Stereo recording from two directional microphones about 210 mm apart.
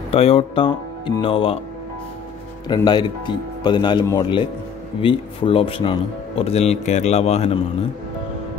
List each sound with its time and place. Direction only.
0.1 s speech: 30° left (ahead or behind)
2.7 s speech: 20° left (ahead or behind)